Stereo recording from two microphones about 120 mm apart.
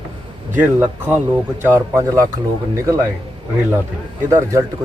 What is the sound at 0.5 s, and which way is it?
Speech, 15° right (ahead or behind).